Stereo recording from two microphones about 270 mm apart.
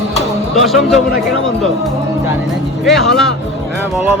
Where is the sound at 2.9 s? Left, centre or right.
Centre.